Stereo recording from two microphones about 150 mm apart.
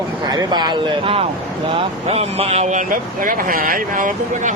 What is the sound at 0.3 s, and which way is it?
A man's voice, 25° right (ahead or behind).